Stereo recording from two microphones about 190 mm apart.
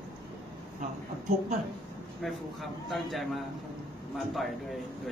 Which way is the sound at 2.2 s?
Centre (ahead or behind).